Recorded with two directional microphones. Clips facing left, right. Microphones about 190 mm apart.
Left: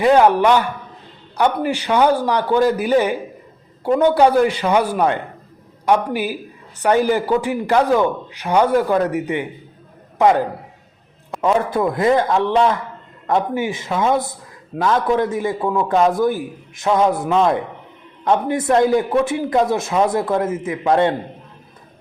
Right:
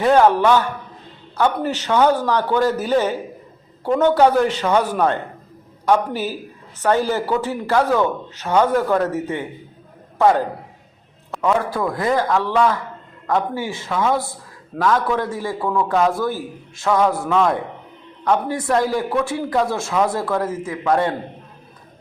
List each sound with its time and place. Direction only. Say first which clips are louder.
0.0 s a man's voice: left 1 dB; 15° left (ahead or behind)